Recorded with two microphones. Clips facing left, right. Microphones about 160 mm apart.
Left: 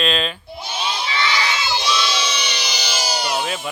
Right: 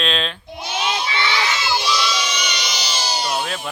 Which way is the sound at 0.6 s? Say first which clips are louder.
Right 3 dB; 10° right (ahead or behind).